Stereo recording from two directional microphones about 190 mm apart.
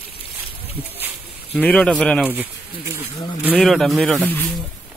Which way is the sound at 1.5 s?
10° left (ahead or behind).